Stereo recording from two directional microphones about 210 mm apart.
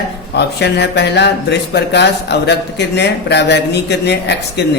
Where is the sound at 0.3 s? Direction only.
55° left (ahead or behind).